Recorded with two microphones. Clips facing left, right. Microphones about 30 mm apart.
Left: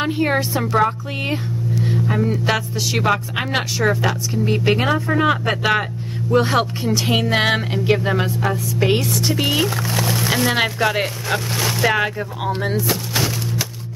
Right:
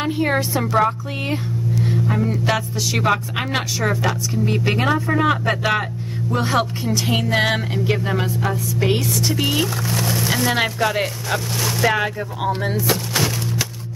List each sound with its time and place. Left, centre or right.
0.0 s speech: centre
13.1 s music: centre